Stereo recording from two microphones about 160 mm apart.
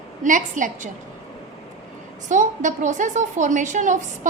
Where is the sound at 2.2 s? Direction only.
50° right (ahead or behind).